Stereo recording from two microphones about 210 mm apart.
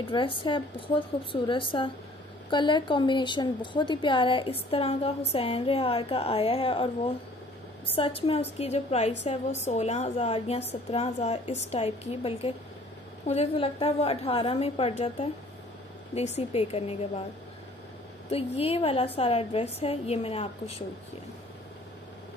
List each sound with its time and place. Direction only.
0.1 s a woman's voice: 25° left (ahead or behind)
7.9 s a woman's voice: 25° left (ahead or behind)
18.3 s a woman's voice: 30° left (ahead or behind)